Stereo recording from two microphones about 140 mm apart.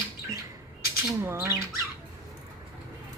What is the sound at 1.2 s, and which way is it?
Speech, 15° right (ahead or behind).